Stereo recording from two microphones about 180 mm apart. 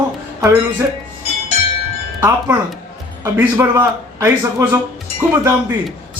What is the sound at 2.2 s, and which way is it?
Speech, 10° right (ahead or behind).